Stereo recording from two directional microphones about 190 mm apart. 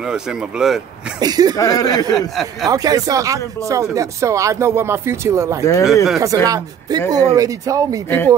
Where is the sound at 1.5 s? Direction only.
15° left (ahead or behind).